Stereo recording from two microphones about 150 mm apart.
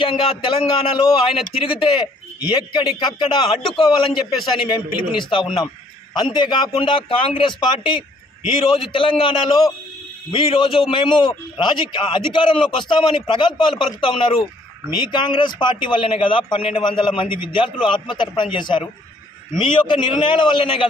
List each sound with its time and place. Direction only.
0.0 s a man's voice: 35° left (ahead or behind)